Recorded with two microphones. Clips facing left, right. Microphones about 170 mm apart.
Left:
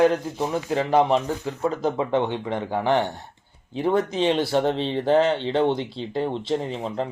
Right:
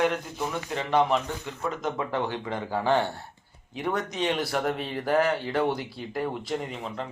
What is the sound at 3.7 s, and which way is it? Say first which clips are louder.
Speech: left 7 dB; 30° left (ahead or behind).